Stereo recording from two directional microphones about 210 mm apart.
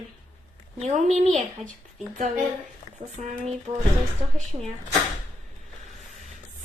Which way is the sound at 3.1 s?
35° right (ahead or behind).